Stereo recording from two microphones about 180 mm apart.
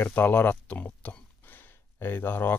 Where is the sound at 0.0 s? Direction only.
10° left (ahead or behind).